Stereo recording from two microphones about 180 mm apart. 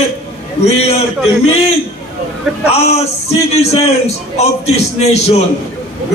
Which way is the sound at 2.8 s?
35° left (ahead or behind).